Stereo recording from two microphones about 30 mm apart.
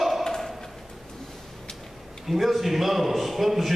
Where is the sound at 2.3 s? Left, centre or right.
Centre.